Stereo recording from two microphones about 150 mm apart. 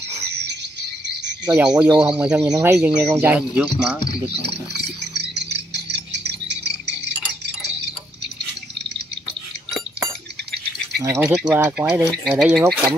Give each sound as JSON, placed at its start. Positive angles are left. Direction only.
{"t": 1.8, "sound": "speech", "side_deg": -5}
{"t": 2.4, "sound": "speech", "side_deg": -20}
{"t": 5.1, "sound": "cricket", "side_deg": -90}
{"t": 11.0, "sound": "speech", "side_deg": -20}
{"t": 11.2, "sound": "speech", "side_deg": -5}